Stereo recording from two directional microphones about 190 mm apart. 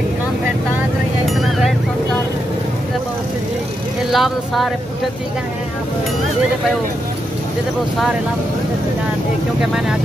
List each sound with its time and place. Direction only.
4.1 s speech: centre (ahead or behind)